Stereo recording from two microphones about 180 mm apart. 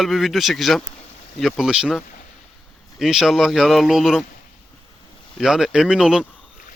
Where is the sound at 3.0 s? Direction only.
Centre (ahead or behind).